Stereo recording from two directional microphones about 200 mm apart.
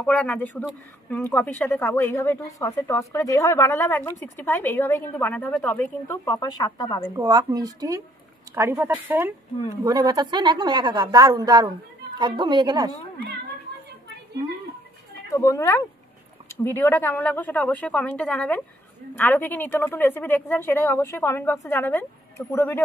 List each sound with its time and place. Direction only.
0.0 s a woman's voice: 5° left (ahead or behind)
7.2 s a woman's voice: 20° right (ahead or behind)
15.3 s a woman's voice: 15° left (ahead or behind)